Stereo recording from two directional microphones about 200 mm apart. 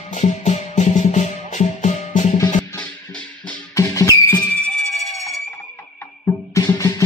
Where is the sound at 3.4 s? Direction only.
15° left (ahead or behind).